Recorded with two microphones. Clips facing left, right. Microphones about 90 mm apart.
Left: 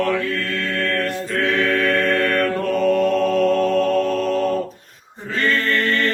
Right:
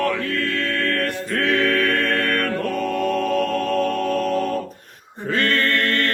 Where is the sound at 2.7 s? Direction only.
Centre (ahead or behind).